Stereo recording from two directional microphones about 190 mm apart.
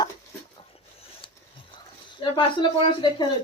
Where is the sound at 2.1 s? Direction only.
25° left (ahead or behind).